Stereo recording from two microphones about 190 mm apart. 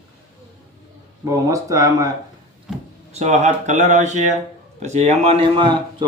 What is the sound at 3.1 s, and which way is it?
Speech, 35° right (ahead or behind).